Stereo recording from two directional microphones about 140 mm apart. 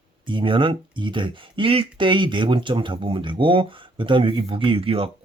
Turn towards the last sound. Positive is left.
turn(degrees=-40)  # may be behind; listen again after turning